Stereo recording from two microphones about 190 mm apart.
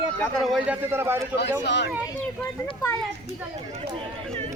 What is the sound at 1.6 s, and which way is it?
Speech, 65° left (ahead or behind).